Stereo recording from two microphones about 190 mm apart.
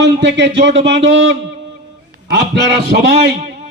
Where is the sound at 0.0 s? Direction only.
70° right (ahead or behind).